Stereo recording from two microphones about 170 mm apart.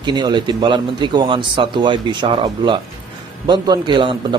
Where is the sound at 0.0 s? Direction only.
25° right (ahead or behind).